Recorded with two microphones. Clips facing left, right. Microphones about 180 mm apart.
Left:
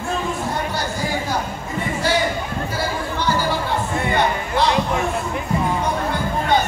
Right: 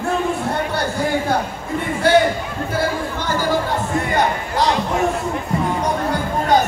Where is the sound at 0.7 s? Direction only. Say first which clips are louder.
Right 4 dB; 60° right (ahead or behind).